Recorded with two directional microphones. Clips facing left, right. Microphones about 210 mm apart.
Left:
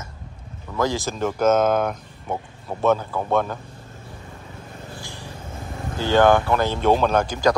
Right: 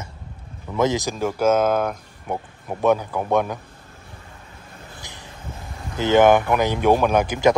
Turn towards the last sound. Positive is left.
turn(degrees=-20)  # may be behind; listen again after turning